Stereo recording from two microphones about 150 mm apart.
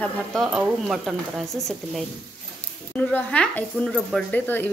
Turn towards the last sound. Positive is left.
turn(degrees=10)  # may be behind; listen again after turning